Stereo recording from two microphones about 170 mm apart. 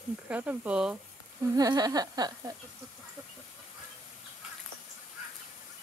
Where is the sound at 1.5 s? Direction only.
20° right (ahead or behind).